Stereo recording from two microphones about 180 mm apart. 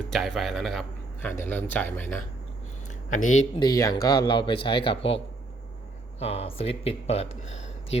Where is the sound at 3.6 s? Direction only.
20° left (ahead or behind).